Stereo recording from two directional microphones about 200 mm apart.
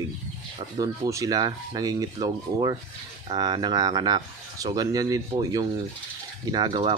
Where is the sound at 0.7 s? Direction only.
15° right (ahead or behind).